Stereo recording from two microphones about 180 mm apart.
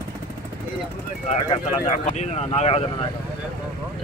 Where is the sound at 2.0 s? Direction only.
40° left (ahead or behind).